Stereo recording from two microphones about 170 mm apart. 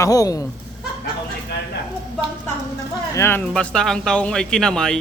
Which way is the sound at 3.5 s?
5° left (ahead or behind).